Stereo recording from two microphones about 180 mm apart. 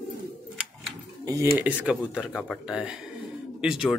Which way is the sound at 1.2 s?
20° right (ahead or behind).